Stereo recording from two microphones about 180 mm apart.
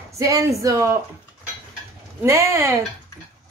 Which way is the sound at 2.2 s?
15° right (ahead or behind).